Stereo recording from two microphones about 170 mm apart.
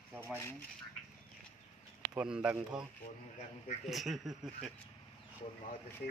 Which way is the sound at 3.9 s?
Centre (ahead or behind).